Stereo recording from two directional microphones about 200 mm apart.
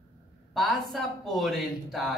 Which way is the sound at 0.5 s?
Centre (ahead or behind).